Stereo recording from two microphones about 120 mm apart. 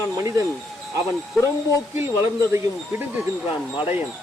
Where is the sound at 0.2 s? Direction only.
25° right (ahead or behind).